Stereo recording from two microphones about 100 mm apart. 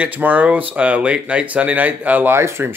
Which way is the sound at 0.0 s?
15° right (ahead or behind).